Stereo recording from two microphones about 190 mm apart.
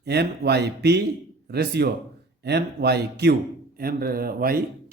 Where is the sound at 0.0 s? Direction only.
60° right (ahead or behind).